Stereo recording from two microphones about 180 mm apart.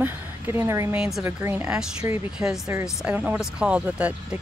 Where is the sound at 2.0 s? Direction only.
15° right (ahead or behind).